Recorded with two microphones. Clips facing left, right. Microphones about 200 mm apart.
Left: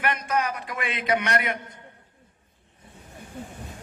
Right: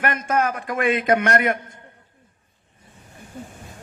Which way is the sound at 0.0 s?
45° right (ahead or behind).